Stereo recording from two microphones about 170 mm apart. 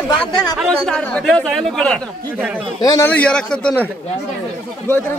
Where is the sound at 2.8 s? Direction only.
20° left (ahead or behind).